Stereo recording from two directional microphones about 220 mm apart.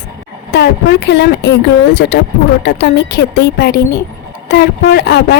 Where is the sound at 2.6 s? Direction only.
50° left (ahead or behind).